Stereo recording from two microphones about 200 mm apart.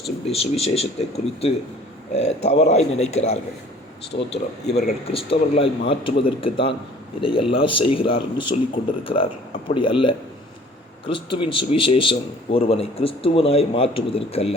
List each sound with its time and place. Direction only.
0.3 s speech: 30° left (ahead or behind)
4.1 s speech: 45° left (ahead or behind)
4.7 s a man's voice: 30° left (ahead or behind)